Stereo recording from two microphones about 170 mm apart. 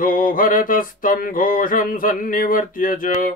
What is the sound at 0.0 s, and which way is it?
Mantra, 55° left (ahead or behind).